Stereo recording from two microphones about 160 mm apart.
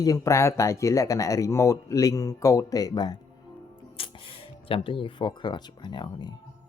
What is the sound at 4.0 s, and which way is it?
Music, 35° left (ahead or behind).